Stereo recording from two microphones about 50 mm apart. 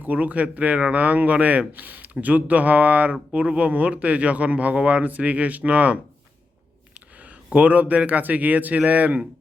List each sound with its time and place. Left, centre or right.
0.0 s speech: right
7.2 s speech: right